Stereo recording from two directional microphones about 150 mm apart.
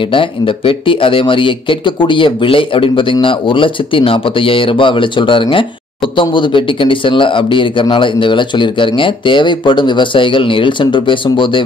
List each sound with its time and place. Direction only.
0.1 s speech: 35° left (ahead or behind)